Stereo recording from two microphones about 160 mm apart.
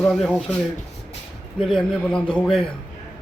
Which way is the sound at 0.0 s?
5° left (ahead or behind).